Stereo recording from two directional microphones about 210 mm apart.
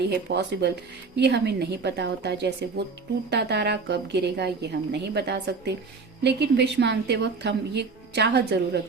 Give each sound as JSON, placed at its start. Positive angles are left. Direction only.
{"t": 0.1, "sound": "speech", "side_deg": -55}